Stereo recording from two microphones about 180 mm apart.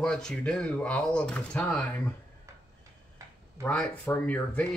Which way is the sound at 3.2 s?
15° right (ahead or behind).